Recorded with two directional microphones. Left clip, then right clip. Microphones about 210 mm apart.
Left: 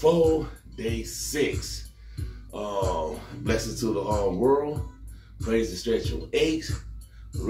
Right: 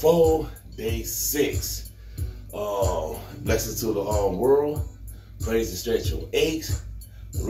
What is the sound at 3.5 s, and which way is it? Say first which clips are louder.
Speech: right 2 dB; 15° left (ahead or behind).